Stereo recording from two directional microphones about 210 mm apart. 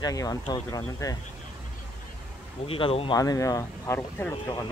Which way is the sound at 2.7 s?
25° left (ahead or behind).